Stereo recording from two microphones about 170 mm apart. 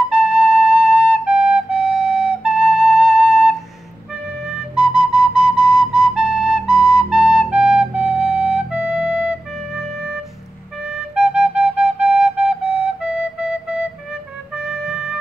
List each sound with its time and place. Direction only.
0.1 s flute: 5° right (ahead or behind)
14.5 s music: 5° right (ahead or behind)